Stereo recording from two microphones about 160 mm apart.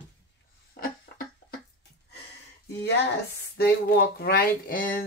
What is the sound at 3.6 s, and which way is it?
Speech, 90° left.